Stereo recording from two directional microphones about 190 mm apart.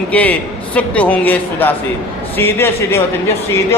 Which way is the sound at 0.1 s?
10° left (ahead or behind).